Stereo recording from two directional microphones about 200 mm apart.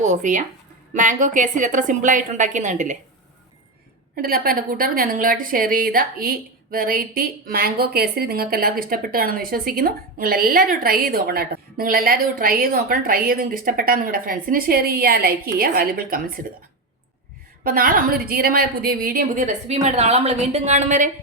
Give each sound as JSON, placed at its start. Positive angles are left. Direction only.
{"t": 0.0, "sound": "a woman's voice", "side_deg": -40}
{"t": 4.1, "sound": "a woman's voice", "side_deg": -45}
{"t": 17.6, "sound": "a woman's voice", "side_deg": -45}